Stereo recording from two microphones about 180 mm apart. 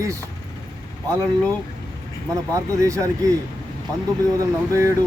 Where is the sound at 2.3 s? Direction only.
15° right (ahead or behind).